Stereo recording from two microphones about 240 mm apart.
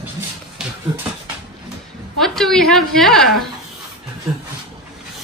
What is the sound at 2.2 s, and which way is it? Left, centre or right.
A woman's voice, centre.